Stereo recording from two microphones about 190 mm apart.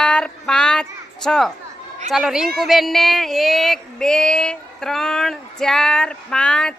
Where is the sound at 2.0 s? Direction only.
Centre (ahead or behind).